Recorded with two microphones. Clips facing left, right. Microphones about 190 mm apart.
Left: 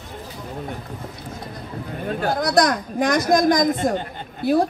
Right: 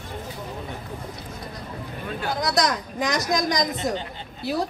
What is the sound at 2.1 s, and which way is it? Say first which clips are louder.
Speech: left 5 dB; 50° left (ahead or behind).